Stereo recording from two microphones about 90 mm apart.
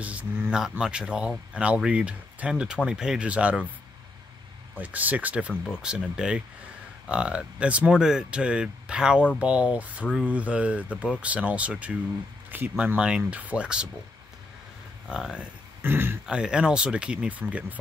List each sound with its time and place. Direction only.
0.0 s speech: 15° right (ahead or behind)
4.7 s speech: 15° right (ahead or behind)
15.0 s speech: 10° right (ahead or behind)
15.8 s speech: 25° right (ahead or behind)
16.3 s speech: 10° right (ahead or behind)